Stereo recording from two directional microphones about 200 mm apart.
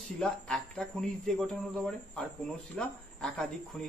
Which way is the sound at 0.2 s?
5° left (ahead or behind).